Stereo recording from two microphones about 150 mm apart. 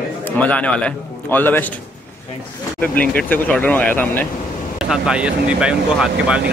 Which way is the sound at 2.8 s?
10° left (ahead or behind).